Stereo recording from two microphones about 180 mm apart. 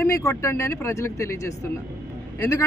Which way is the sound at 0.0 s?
15° left (ahead or behind).